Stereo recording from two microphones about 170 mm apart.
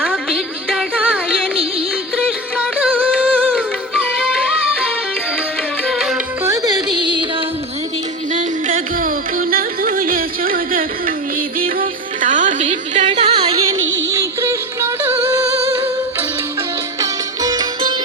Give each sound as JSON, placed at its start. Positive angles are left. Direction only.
{"t": 0.0, "sound": "music", "side_deg": 0}
{"t": 5.9, "sound": "music", "side_deg": -5}
{"t": 6.4, "sound": "music", "side_deg": -20}
{"t": 8.3, "sound": "music", "side_deg": -45}
{"t": 14.1, "sound": "music", "side_deg": -15}
{"t": 17.0, "sound": "music", "side_deg": -25}